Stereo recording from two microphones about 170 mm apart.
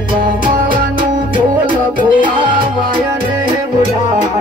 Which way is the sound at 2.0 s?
30° right (ahead or behind).